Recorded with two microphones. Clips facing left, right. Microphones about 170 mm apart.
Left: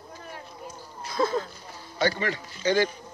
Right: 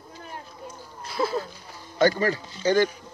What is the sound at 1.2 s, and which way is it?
Speech, 20° right (ahead or behind).